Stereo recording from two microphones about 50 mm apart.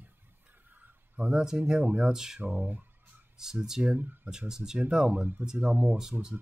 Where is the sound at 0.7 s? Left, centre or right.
Right.